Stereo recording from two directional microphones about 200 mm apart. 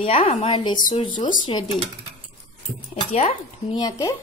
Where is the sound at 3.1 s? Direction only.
30° left (ahead or behind).